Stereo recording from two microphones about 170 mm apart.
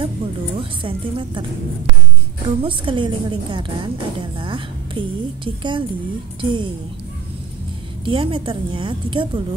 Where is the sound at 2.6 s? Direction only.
30° right (ahead or behind).